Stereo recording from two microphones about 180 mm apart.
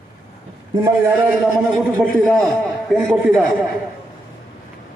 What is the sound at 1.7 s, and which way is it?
A man's voice, 5° left (ahead or behind).